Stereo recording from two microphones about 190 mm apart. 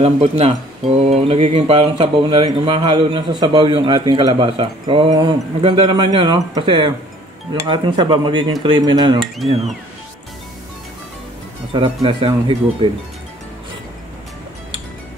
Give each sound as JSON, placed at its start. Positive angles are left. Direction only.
{"t": 0.0, "sound": "speech", "side_deg": -30}
{"t": 11.7, "sound": "speech", "side_deg": -25}